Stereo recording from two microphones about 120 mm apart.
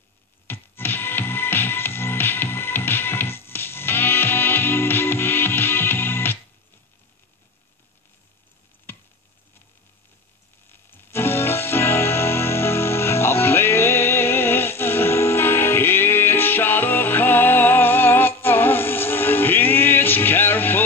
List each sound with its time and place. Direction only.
0.5 s music: 20° left (ahead or behind)
8.9 s a sound: 20° left (ahead or behind)
10.7 s music: 20° left (ahead or behind)